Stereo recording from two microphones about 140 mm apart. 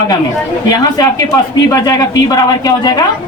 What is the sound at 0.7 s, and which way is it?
Speech, 25° left (ahead or behind).